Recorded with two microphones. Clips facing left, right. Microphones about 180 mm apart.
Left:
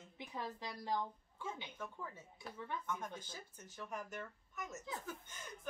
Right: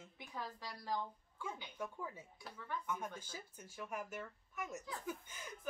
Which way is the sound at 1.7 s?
10° right (ahead or behind).